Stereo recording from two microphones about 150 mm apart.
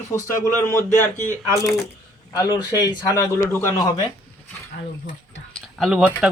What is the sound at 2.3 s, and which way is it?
A man's voice, 25° left (ahead or behind).